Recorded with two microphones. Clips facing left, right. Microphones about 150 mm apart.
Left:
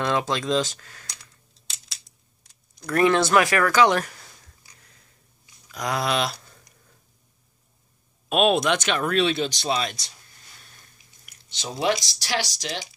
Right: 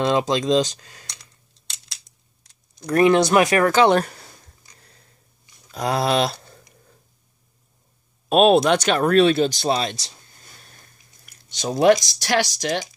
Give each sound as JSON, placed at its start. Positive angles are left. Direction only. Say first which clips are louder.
{"t": 0.0, "sound": "speech", "louder": "right 5 dB", "side_deg": -20}
{"t": 1.0, "sound": "a sound", "louder": "right 1 dB", "side_deg": 5}
{"t": 2.9, "sound": "speech", "louder": "right 3 dB", "side_deg": -20}
{"t": 4.7, "sound": "a sound", "louder": "right 4 dB", "side_deg": -35}
{"t": 5.7, "sound": "speech", "louder": "right 5 dB", "side_deg": -30}
{"t": 8.3, "sound": "speech", "louder": "right 6 dB", "side_deg": -35}
{"t": 11.5, "sound": "speech", "louder": "right 9 dB", "side_deg": -50}